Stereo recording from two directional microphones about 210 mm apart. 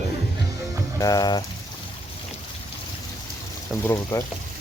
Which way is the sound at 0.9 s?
15° left (ahead or behind).